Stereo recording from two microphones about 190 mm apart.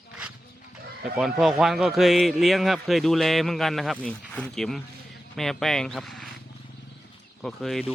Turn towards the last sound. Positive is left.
turn(degrees=0)  # may be behind; listen again after turning